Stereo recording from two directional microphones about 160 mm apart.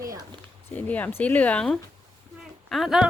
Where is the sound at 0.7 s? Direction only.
10° left (ahead or behind).